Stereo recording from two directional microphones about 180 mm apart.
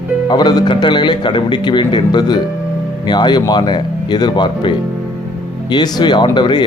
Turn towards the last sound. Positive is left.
turn(degrees=25)  # may be behind; listen again after turning